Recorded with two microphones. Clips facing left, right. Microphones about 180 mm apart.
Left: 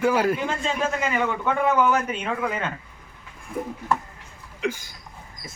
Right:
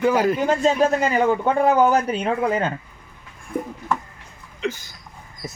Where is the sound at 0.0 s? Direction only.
10° left (ahead or behind).